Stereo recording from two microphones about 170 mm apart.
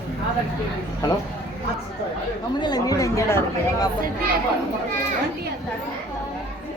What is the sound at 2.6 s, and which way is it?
Speech, 25° left (ahead or behind).